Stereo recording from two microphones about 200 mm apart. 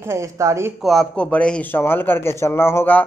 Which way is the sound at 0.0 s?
15° right (ahead or behind).